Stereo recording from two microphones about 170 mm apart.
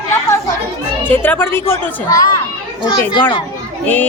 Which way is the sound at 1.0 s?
10° left (ahead or behind).